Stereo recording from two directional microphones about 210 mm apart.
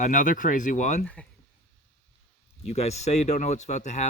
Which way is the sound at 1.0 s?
5° left (ahead or behind).